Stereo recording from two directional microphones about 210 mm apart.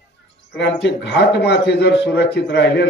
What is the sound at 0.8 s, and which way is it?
A man's voice, 55° left (ahead or behind).